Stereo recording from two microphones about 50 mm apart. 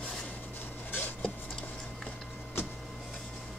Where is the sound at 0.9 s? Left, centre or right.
Left.